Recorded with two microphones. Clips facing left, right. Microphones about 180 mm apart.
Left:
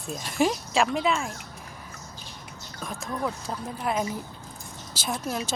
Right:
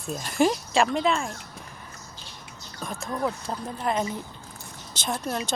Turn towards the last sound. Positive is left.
turn(degrees=5)  # may be behind; listen again after turning